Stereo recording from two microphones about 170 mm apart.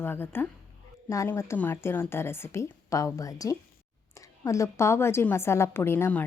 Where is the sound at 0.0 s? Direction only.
10° left (ahead or behind).